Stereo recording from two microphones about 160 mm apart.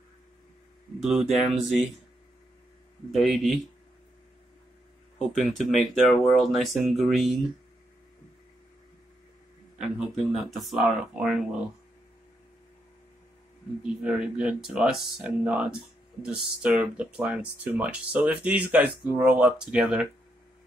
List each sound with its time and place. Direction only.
1.0 s speech: centre (ahead or behind)
3.1 s speech: centre (ahead or behind)
5.2 s speech: centre (ahead or behind)
9.9 s speech: centre (ahead or behind)
14.0 s speech: 5° right (ahead or behind)